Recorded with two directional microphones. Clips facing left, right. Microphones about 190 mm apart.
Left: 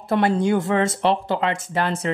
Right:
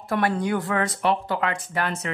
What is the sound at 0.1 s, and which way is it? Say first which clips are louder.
Speech: left 5 dB; 25° left (ahead or behind).